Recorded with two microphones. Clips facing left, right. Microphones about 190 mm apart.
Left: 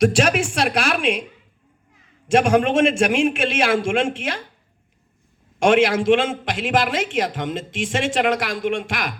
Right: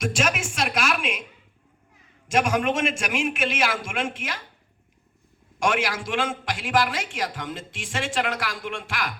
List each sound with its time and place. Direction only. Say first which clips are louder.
0.0 s a sound: left 9 dB; 35° left (ahead or behind)
2.2 s a man's voice: left 6 dB; 30° left (ahead or behind)
5.5 s a man's voice: left 9 dB; 25° left (ahead or behind)